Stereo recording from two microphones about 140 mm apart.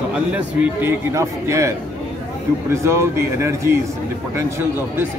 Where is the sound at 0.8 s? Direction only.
20° right (ahead or behind).